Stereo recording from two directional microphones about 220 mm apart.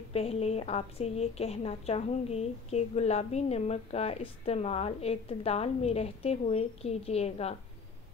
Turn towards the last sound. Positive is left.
turn(degrees=30)  # may be behind; listen again after turning